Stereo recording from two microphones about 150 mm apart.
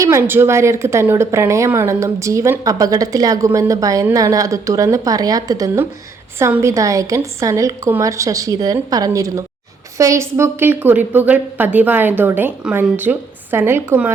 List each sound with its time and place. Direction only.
0.0 s a woman's voice: 20° right (ahead or behind)